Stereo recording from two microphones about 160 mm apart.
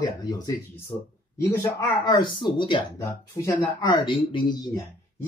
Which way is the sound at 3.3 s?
20° left (ahead or behind).